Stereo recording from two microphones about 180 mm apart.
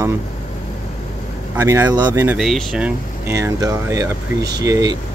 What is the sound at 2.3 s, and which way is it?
Speech, centre (ahead or behind).